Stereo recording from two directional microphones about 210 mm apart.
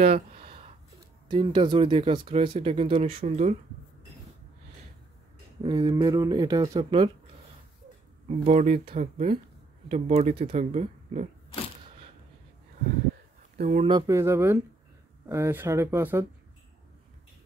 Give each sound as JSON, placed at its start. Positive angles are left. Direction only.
{"t": 0.3, "sound": "a sound", "side_deg": -25}
{"t": 1.3, "sound": "speech", "side_deg": -25}
{"t": 5.6, "sound": "speech", "side_deg": -20}
{"t": 8.3, "sound": "speech", "side_deg": -30}
{"t": 13.6, "sound": "speech", "side_deg": -35}
{"t": 13.8, "sound": "speech", "side_deg": -20}